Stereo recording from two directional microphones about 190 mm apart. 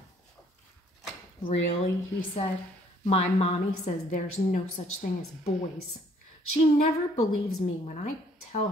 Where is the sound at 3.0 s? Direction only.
35° left (ahead or behind).